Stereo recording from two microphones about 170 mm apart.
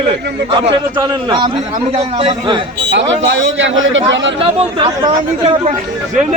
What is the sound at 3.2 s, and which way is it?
A man's voice, 90° right.